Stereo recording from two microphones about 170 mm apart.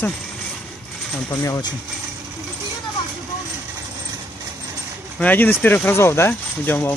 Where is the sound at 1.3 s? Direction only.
20° left (ahead or behind).